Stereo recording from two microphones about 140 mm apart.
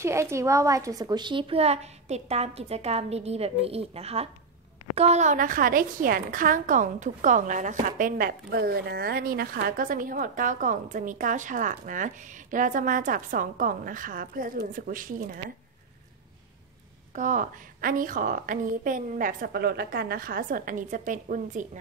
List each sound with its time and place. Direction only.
0.0 s a woman's voice: 20° right (ahead or behind); by 15.4 s 85° right
17.1 s a woman's voice: 65° right (ahead or behind)